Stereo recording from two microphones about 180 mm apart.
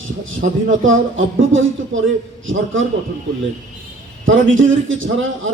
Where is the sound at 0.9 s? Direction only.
90° right.